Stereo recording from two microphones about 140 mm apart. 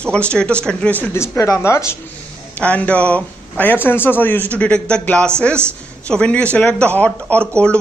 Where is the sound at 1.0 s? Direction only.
20° left (ahead or behind).